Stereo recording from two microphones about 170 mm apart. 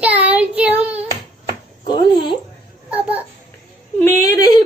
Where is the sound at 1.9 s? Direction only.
25° left (ahead or behind).